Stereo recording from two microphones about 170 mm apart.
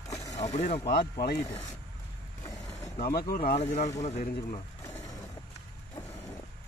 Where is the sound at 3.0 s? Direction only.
65° left (ahead or behind).